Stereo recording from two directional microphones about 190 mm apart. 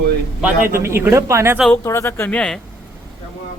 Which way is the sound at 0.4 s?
10° right (ahead or behind).